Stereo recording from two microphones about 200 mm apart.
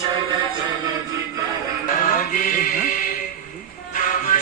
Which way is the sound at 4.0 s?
40° left (ahead or behind).